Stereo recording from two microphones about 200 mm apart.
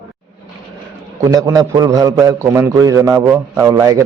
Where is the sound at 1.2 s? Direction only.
15° right (ahead or behind).